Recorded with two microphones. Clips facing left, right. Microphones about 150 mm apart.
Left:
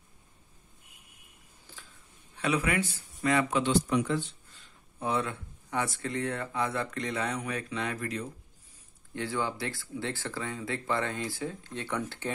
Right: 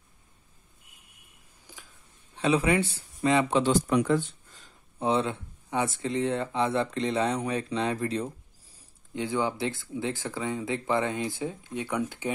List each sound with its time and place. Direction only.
1.7 s a sound: 15° right (ahead or behind)
2.3 s speech: 25° right (ahead or behind)
3.7 s speech: 45° right (ahead or behind)
4.9 s speech: 25° right (ahead or behind)
9.1 s speech: 20° right (ahead or behind)